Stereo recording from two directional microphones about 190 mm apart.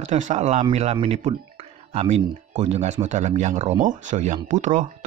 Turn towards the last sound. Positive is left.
turn(degrees=-40)  # may be behind; listen again after turning